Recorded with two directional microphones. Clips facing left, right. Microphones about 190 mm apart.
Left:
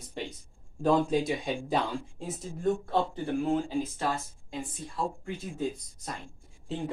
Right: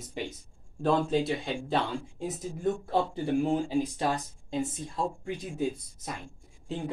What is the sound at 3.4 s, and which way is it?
Speech, 15° right (ahead or behind).